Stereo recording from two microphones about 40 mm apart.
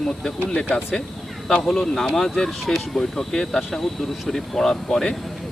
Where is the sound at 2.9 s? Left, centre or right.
Centre.